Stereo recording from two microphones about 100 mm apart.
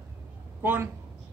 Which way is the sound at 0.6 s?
20° right (ahead or behind).